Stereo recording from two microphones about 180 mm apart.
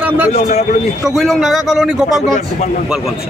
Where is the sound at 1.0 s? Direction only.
Centre (ahead or behind).